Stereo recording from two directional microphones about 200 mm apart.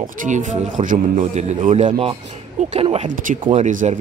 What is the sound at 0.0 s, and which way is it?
Speech, 40° right (ahead or behind).